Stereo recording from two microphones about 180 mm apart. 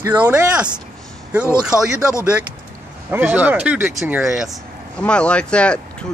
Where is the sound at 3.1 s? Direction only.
10° right (ahead or behind).